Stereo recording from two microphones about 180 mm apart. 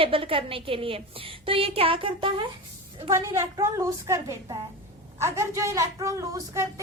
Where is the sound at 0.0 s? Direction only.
30° right (ahead or behind).